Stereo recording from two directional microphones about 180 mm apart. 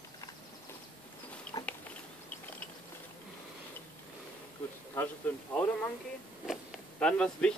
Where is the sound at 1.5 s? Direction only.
20° left (ahead or behind).